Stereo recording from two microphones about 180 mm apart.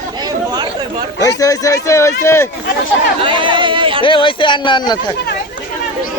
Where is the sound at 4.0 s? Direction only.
30° left (ahead or behind).